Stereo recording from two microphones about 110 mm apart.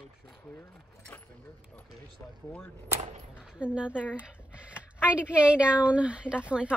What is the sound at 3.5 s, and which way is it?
Speech, 10° right (ahead or behind).